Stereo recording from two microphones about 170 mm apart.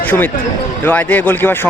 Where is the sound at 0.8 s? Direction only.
10° left (ahead or behind).